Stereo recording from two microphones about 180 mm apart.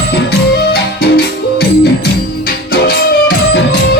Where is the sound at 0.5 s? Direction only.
60° left (ahead or behind).